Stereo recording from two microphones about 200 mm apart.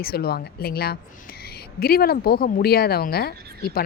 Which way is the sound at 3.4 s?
50° right (ahead or behind).